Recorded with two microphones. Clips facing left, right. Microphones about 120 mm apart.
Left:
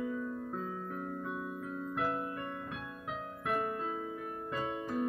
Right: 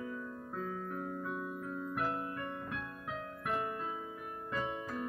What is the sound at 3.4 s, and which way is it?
Music, 35° left (ahead or behind).